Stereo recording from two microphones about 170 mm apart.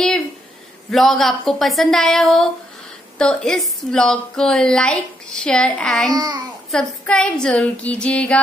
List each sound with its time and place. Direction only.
0.8 s a woman's voice: centre (ahead or behind)
6.1 s a child's voice: 25° right (ahead or behind)
6.7 s a sound: 5° left (ahead or behind)